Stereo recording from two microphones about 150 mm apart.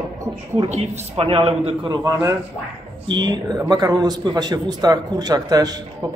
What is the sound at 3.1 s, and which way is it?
A man's voice, 30° right (ahead or behind).